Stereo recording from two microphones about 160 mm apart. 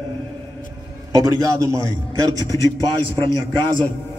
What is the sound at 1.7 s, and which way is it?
A man's voice, 20° right (ahead or behind).